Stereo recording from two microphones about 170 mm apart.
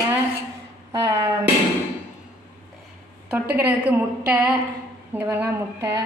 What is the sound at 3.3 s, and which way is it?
A woman's voice, 10° right (ahead or behind).